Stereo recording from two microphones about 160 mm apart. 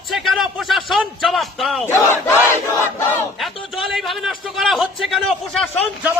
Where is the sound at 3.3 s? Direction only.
Centre (ahead or behind).